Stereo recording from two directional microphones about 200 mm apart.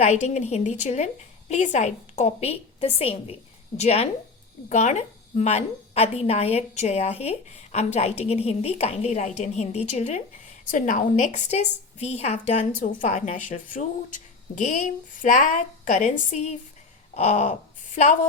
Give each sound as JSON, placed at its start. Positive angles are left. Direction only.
{"t": 0.0, "sound": "a woman's voice", "side_deg": 35}